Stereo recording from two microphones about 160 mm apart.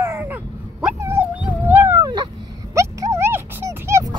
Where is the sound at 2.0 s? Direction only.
25° right (ahead or behind).